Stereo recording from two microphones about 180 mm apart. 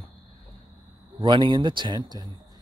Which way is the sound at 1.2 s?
25° right (ahead or behind).